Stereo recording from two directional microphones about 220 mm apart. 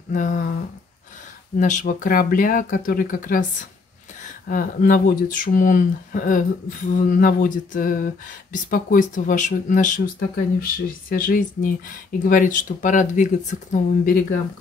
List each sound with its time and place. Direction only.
0.1 s speech: 35° left (ahead or behind)
1.6 s speech: 35° left (ahead or behind)
4.5 s speech: 40° left (ahead or behind)